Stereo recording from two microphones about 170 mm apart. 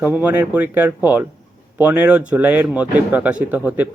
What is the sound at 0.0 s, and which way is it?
Speech, 10° right (ahead or behind).